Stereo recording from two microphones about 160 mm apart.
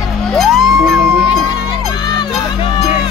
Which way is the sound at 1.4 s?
25° left (ahead or behind).